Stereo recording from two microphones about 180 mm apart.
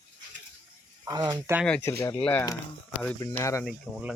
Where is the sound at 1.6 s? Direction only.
5° left (ahead or behind).